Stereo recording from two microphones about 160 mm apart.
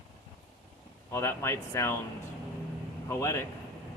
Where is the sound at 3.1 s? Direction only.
15° left (ahead or behind).